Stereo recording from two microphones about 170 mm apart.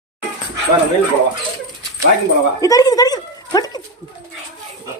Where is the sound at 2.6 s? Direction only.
20° left (ahead or behind).